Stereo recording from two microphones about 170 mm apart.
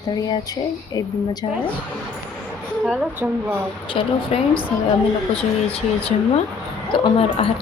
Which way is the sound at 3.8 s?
35° left (ahead or behind).